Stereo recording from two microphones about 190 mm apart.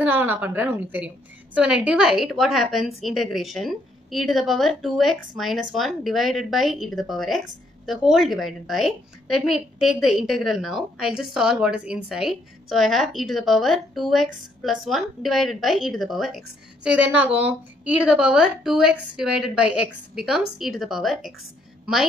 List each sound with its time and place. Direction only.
0.0 s a woman's voice: 10° right (ahead or behind)